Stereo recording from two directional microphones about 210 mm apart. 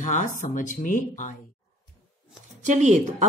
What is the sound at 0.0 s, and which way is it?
Speech, 35° left (ahead or behind).